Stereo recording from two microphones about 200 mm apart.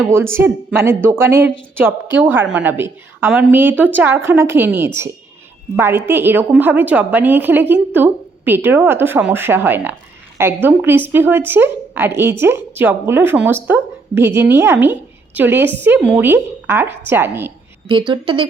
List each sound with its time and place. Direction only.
0.1 s speech: 10° right (ahead or behind)
17.8 s a woman's voice: 25° right (ahead or behind)